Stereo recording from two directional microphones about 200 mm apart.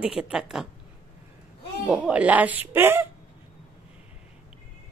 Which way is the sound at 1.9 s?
5° right (ahead or behind).